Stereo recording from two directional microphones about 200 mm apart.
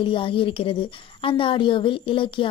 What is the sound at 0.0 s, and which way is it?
A woman's voice, 25° left (ahead or behind).